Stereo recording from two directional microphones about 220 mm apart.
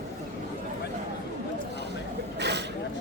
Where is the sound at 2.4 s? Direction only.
50° right (ahead or behind).